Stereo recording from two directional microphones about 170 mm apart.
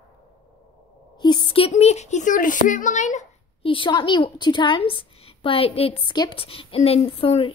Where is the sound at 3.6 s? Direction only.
30° left (ahead or behind).